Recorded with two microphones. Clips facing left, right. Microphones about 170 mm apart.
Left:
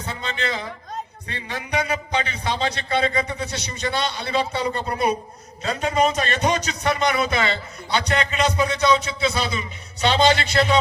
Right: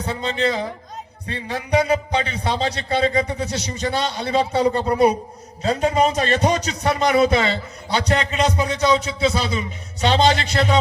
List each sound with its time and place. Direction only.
0.0 s a man's voice: 35° right (ahead or behind)